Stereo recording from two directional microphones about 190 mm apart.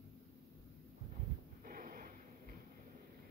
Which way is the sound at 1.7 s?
45° right (ahead or behind).